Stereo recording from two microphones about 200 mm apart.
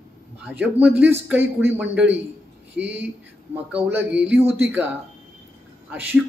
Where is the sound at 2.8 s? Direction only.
60° right (ahead or behind).